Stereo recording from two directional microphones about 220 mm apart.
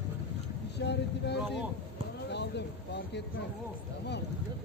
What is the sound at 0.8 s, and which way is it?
Speech, 50° left (ahead or behind).